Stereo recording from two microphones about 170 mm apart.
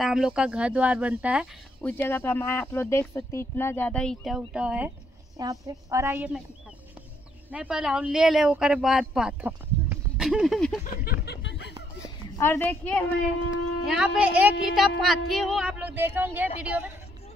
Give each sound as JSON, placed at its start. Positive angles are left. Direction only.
{"t": 0.0, "sound": "speech", "side_deg": -5}
{"t": 1.8, "sound": "speech", "side_deg": 10}
{"t": 5.4, "sound": "speech", "side_deg": -20}
{"t": 7.5, "sound": "speech", "side_deg": -5}
{"t": 11.1, "sound": "a sound", "side_deg": 85}
{"t": 12.4, "sound": "speech", "side_deg": 10}
{"t": 13.5, "sound": "speech", "side_deg": -5}